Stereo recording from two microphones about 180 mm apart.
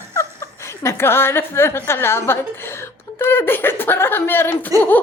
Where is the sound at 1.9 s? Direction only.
15° left (ahead or behind).